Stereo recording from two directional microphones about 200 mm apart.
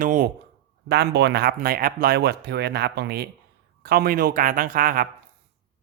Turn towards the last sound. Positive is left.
turn(degrees=-45)  # may be behind; listen again after turning